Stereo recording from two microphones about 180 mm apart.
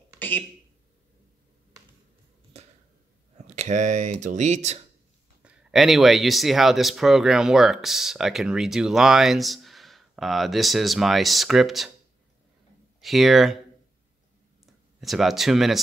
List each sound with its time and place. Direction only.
3.4 s speech: 40° right (ahead or behind)
5.4 s speech: 5° right (ahead or behind)
13.0 s speech: centre (ahead or behind)
14.7 s speech: centre (ahead or behind)